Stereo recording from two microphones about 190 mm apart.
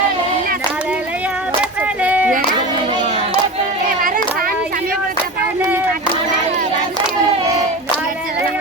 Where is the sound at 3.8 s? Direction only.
45° right (ahead or behind).